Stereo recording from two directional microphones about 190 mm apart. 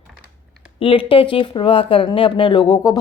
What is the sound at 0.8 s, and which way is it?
Speech, 30° left (ahead or behind).